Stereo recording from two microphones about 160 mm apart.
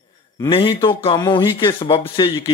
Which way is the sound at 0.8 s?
35° left (ahead or behind).